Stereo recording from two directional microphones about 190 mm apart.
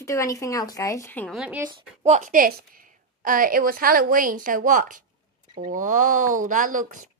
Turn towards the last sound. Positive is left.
turn(degrees=-45)  # may be behind; listen again after turning